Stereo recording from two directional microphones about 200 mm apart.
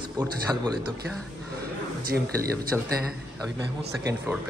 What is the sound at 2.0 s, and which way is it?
Speech, 50° right (ahead or behind).